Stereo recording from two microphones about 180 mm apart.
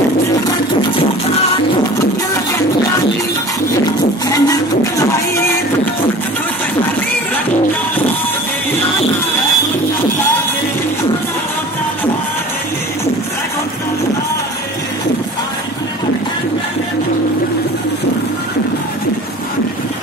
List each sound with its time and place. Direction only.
4.3 s music: 15° left (ahead or behind)